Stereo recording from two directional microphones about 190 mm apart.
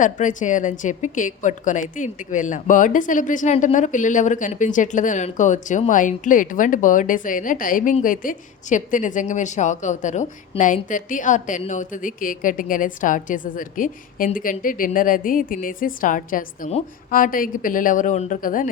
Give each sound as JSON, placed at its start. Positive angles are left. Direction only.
{"t": 0.0, "sound": "a woman's voice", "side_deg": 40}